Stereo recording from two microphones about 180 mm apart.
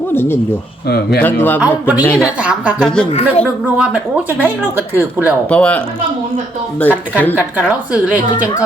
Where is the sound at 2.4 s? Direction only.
5° right (ahead or behind).